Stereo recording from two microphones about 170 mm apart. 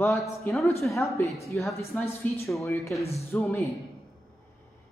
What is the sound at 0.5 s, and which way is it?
Speech, 10° left (ahead or behind).